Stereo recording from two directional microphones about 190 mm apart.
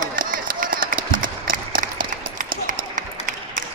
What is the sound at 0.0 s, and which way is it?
Run, 45° right (ahead or behind).